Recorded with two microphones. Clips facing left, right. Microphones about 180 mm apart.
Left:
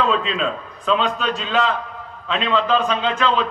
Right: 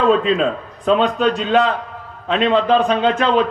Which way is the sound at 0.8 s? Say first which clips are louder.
Right 5 dB; 55° right (ahead or behind).